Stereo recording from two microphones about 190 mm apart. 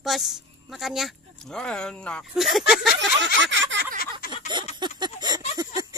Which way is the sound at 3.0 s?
75° right (ahead or behind).